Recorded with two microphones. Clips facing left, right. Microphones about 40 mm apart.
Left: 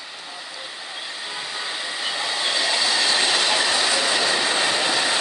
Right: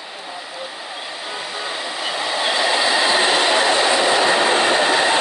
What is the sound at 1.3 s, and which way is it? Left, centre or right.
Train, centre.